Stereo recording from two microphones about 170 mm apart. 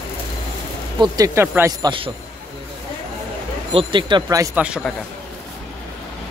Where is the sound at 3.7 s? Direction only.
30° right (ahead or behind).